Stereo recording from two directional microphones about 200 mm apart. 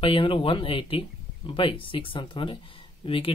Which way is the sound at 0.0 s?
25° left (ahead or behind).